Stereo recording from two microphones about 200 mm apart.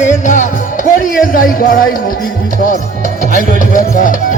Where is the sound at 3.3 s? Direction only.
45° left (ahead or behind).